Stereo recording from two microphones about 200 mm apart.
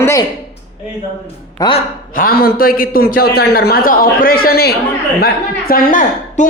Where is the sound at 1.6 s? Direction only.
25° left (ahead or behind).